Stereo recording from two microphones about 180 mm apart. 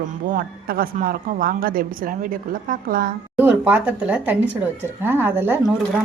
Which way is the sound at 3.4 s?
10° right (ahead or behind).